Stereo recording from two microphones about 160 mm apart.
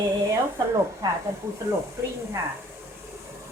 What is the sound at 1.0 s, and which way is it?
Speech, 20° right (ahead or behind).